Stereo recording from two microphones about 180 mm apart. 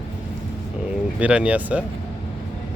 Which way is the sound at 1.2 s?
5° right (ahead or behind).